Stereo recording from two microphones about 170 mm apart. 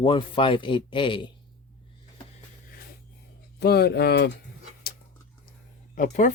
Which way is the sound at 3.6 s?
70° left (ahead or behind).